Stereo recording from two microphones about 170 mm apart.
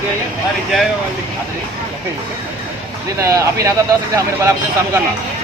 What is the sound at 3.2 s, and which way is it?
Speech, 20° right (ahead or behind).